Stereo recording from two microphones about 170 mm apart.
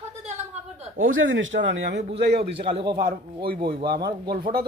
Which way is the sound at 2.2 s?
70° right (ahead or behind).